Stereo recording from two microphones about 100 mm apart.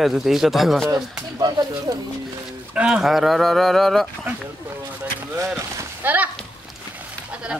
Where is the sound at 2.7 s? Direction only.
10° right (ahead or behind).